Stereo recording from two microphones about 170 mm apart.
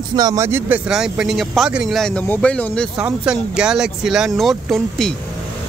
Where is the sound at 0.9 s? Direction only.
5° right (ahead or behind).